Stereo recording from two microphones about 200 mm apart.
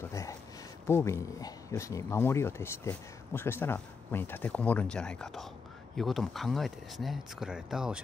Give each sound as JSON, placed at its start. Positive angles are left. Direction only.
{"t": 0.1, "sound": "speech", "side_deg": 15}